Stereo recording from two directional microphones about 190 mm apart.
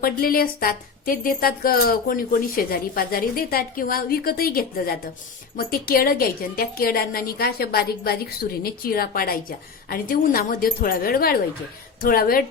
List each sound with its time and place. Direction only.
0.0 s a woman's voice: 50° left (ahead or behind)